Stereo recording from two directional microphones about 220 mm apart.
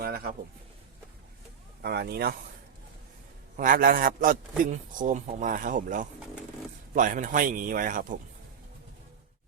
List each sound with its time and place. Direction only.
0.0 s a sound: 45° right (ahead or behind)
1.8 s speech: 45° right (ahead or behind)
3.6 s a man's voice: 40° right (ahead or behind)